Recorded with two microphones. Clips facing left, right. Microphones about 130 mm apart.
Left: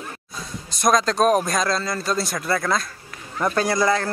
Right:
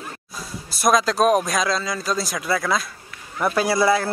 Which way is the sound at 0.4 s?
5° right (ahead or behind).